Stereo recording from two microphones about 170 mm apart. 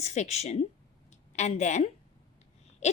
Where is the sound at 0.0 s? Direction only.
40° left (ahead or behind).